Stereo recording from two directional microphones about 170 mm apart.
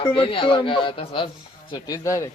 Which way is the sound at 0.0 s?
30° left (ahead or behind).